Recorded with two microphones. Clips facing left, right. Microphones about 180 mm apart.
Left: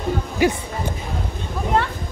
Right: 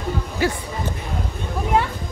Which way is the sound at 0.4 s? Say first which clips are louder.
Left 4 dB; 15° left (ahead or behind).